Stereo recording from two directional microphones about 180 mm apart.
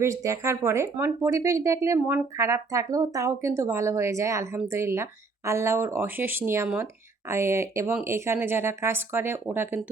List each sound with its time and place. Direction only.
0.0 s speech: 15° right (ahead or behind)